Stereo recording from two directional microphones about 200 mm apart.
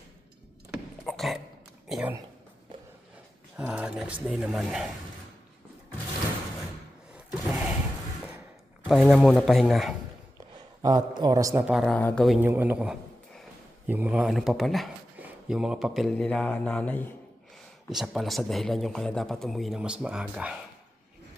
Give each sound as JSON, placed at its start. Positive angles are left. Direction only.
{"t": 0.7, "sound": "a sound", "side_deg": 0}
{"t": 1.9, "sound": "a man's voice", "side_deg": -5}
{"t": 3.6, "sound": "a man's voice", "side_deg": -5}
{"t": 8.8, "sound": "a man's voice", "side_deg": -5}
{"t": 10.5, "sound": "a man's voice", "side_deg": -20}
{"t": 11.7, "sound": "a man's voice", "side_deg": 0}